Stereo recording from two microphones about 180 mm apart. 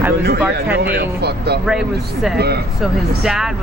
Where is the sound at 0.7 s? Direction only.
60° right (ahead or behind).